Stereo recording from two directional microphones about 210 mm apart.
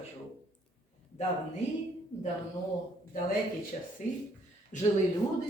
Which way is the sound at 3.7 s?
40° left (ahead or behind).